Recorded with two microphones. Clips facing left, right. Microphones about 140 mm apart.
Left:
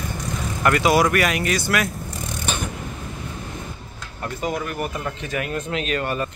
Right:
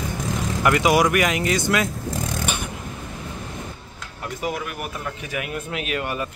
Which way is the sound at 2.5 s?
10° right (ahead or behind).